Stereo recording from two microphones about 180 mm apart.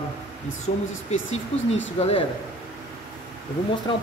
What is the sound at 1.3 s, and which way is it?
Speech, 90° left.